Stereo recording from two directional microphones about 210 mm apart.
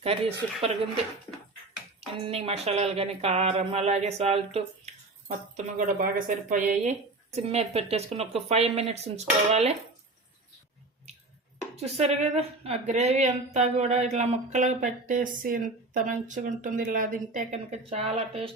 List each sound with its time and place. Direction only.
0.0 s speech: 30° right (ahead or behind)
2.0 s speech: 25° right (ahead or behind)
11.9 s speech: 30° right (ahead or behind)